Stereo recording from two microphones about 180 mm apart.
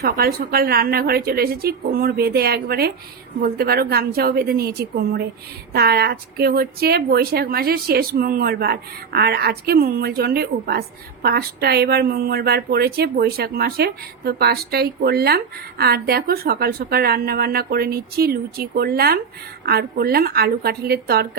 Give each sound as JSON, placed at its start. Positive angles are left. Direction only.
{"t": 0.0, "sound": "a woman's voice", "side_deg": -55}